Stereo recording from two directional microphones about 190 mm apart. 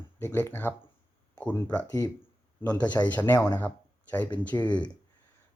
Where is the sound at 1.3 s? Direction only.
10° left (ahead or behind).